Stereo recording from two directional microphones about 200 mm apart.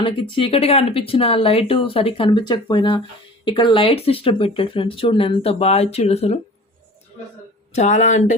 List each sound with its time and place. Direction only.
0.0 s speech: 25° left (ahead or behind)
7.7 s speech: 35° left (ahead or behind)